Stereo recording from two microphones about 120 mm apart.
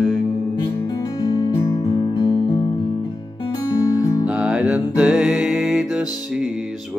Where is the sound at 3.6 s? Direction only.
35° left (ahead or behind).